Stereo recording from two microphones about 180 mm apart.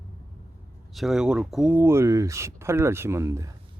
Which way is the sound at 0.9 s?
5° right (ahead or behind).